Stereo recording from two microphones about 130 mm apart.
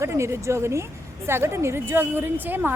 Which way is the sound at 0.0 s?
20° right (ahead or behind).